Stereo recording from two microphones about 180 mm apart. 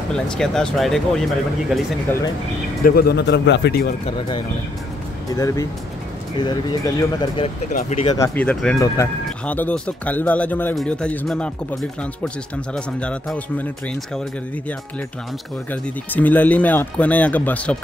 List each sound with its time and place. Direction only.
0.1 s speech: 5° left (ahead or behind)
2.8 s speech: 55° left (ahead or behind)
5.3 s speech: 20° left (ahead or behind)
7.4 s speech: 35° left (ahead or behind)
8.4 s speech: 10° left (ahead or behind)
8.7 s speech: 20° left (ahead or behind)
12.7 s speech: 5° left (ahead or behind)
15.7 s speech: 10° left (ahead or behind)